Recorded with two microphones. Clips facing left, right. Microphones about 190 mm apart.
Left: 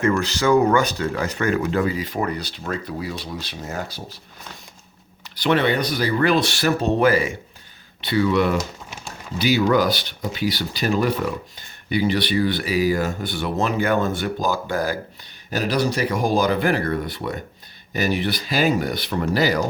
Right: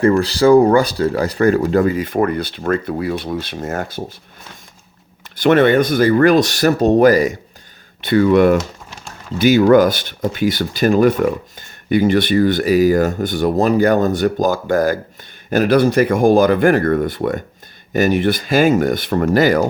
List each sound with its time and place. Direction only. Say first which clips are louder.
0.0 s speech: right 7 dB; 35° right (ahead or behind); by 4.0 s 50° right (ahead or behind)
5.4 s speech: right 8 dB; 50° right (ahead or behind)